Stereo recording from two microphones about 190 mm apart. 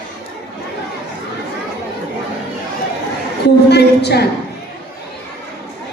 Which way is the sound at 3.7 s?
60° left (ahead or behind).